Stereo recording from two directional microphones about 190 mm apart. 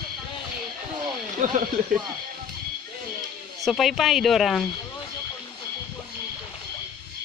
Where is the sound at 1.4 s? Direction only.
45° right (ahead or behind).